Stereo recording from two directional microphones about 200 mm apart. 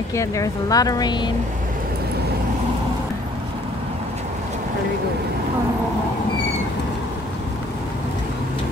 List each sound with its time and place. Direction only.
0.1 s speech: 15° left (ahead or behind)